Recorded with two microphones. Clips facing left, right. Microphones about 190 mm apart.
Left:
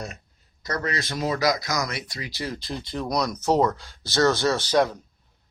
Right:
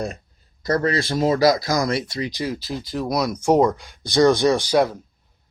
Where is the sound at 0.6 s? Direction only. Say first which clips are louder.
Right 8 dB; 30° right (ahead or behind); by 2.6 s 15° right (ahead or behind).